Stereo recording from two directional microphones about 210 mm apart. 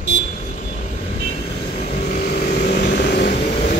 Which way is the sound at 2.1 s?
45° left (ahead or behind).